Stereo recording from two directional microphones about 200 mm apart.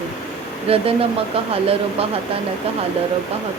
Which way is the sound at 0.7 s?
30° right (ahead or behind).